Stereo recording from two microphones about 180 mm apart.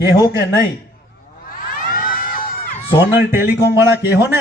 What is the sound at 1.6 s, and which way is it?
Crowd, 55° left (ahead or behind).